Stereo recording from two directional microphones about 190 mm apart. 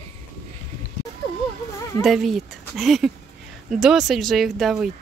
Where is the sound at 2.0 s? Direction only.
Centre (ahead or behind).